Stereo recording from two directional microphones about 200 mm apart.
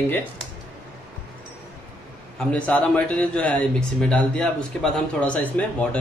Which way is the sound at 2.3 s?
5° left (ahead or behind).